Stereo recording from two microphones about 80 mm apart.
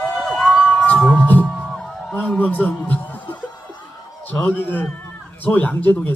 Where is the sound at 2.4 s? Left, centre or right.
Left.